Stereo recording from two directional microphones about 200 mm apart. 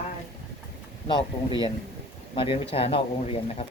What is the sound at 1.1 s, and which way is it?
Speech, 25° left (ahead or behind).